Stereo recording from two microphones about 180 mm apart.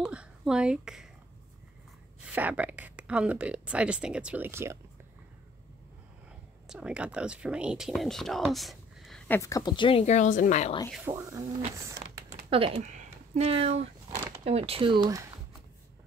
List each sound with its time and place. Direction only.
0.0 s a sound: 5° right (ahead or behind)
2.2 s speech: 10° right (ahead or behind)
6.7 s speech: 5° right (ahead or behind)
9.3 s a woman's voice: 15° left (ahead or behind); by 10.7 s 45° left (ahead or behind)
10.9 s speech: 10° right (ahead or behind)
12.4 s speech: 30° right (ahead or behind)